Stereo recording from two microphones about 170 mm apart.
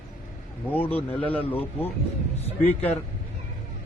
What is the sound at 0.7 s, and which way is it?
Speech, 10° left (ahead or behind).